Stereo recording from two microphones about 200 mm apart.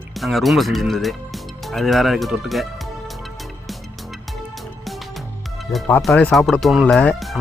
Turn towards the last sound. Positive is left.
turn(degrees=5)  # may be behind; listen again after turning